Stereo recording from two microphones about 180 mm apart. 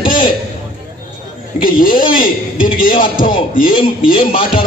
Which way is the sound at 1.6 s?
50° left (ahead or behind).